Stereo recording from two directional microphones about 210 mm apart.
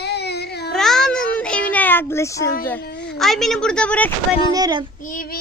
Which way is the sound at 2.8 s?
50° left (ahead or behind).